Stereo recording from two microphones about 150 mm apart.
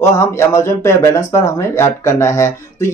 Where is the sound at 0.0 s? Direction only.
20° left (ahead or behind).